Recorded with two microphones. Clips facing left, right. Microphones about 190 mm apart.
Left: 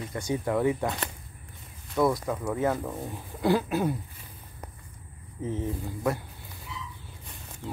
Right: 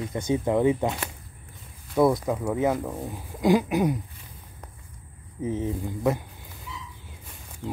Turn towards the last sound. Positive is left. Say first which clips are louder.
# right 3 dB
turn(degrees=0)  # may be behind; listen again after turning